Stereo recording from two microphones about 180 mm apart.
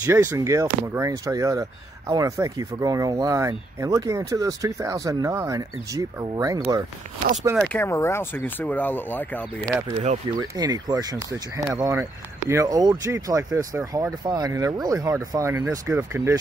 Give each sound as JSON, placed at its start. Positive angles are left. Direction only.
{"t": 0.0, "sound": "speech", "side_deg": -15}
{"t": 7.6, "sound": "speech", "side_deg": 10}
{"t": 9.7, "sound": "speech", "side_deg": -15}